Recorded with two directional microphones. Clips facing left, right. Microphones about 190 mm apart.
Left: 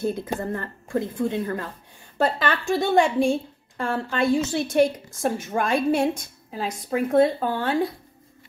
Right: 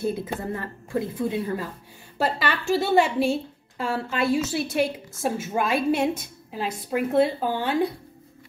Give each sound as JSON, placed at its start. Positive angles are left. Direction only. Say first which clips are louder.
{"t": 0.0, "sound": "a woman's voice", "louder": "left 1 dB", "side_deg": -5}